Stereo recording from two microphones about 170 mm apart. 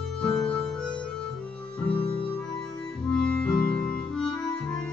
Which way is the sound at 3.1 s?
5° left (ahead or behind).